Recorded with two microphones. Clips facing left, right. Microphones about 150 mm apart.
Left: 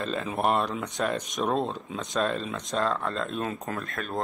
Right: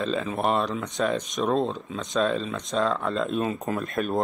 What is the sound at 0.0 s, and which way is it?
Speech, centre (ahead or behind).